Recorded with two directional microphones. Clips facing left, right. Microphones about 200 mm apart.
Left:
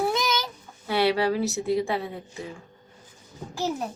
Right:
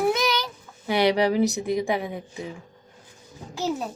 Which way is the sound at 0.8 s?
15° right (ahead or behind).